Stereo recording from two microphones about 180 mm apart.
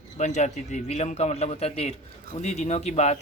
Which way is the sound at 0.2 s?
40° left (ahead or behind).